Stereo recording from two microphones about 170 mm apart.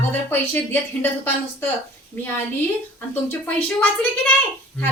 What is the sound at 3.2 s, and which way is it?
Speech, 10° left (ahead or behind).